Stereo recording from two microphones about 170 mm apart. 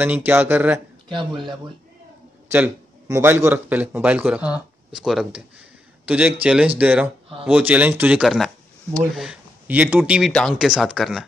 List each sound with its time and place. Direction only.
0.0 s speech: 10° right (ahead or behind)
1.0 s speech: 25° right (ahead or behind)
2.5 s a man's voice: 15° right (ahead or behind)